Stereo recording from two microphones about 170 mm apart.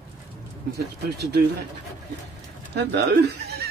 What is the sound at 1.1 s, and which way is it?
Speech, 75° right (ahead or behind).